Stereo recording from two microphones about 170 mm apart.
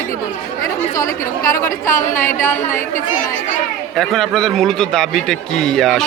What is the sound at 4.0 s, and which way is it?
A man's voice, 5° left (ahead or behind).